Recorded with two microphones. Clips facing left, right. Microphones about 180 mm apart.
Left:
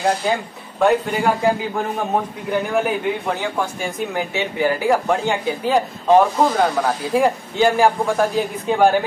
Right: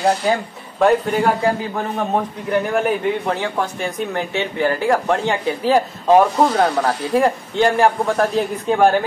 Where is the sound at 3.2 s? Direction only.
Centre (ahead or behind).